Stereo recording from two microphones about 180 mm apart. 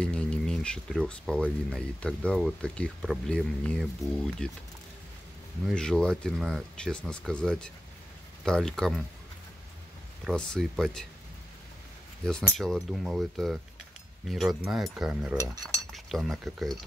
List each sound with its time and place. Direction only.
0.0 s a sound: 5° left (ahead or behind)
1.7 s speech: 5° left (ahead or behind)
5.7 s speech: 5° left (ahead or behind)
10.2 s speech: centre (ahead or behind)
12.3 s speech: 5° left (ahead or behind)
15.3 s speech: 20° right (ahead or behind)
15.9 s speech: centre (ahead or behind)